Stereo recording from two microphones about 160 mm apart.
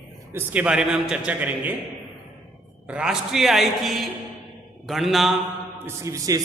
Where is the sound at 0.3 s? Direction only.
10° right (ahead or behind).